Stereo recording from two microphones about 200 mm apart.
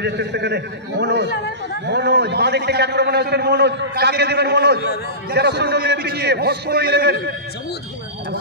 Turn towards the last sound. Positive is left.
turn(degrees=-55)  # may be behind; listen again after turning